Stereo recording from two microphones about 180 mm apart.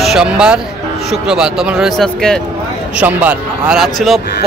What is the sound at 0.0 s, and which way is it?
Speech, 5° right (ahead or behind).